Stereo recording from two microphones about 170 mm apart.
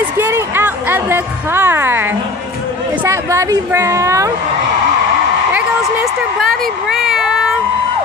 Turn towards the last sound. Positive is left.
turn(degrees=0)  # may be behind; listen again after turning